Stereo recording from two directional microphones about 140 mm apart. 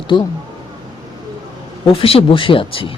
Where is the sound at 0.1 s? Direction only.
35° left (ahead or behind).